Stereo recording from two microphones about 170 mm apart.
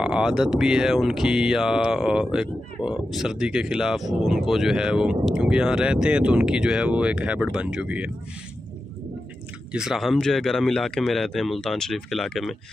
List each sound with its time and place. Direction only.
0.0 s speech: 5° right (ahead or behind)
9.7 s speech: 5° right (ahead or behind)